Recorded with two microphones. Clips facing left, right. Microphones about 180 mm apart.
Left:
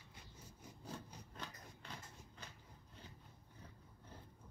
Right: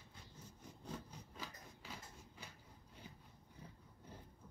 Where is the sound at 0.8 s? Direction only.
Centre (ahead or behind).